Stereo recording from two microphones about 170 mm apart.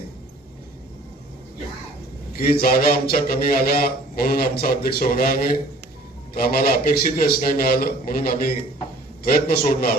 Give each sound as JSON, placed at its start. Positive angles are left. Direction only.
{"t": 2.3, "sound": "a man's voice", "side_deg": 60}